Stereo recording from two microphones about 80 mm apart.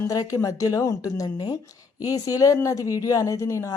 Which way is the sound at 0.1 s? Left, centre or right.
Left.